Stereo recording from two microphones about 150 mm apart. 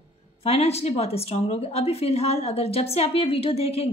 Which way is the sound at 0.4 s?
40° left (ahead or behind).